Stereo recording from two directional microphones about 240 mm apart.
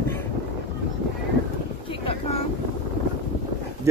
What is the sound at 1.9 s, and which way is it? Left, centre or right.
Boat, left.